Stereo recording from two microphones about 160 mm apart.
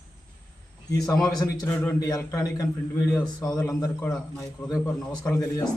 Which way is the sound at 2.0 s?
20° left (ahead or behind).